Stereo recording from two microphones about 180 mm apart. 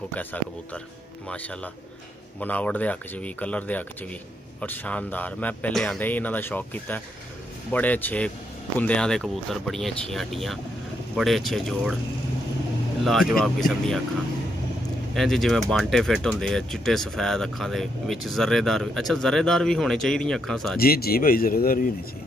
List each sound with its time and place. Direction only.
0.1 s speech: 10° left (ahead or behind)
2.4 s speech: 10° left (ahead or behind)
13.0 s speech: centre (ahead or behind)
15.1 s speech: centre (ahead or behind)
20.8 s speech: 55° left (ahead or behind)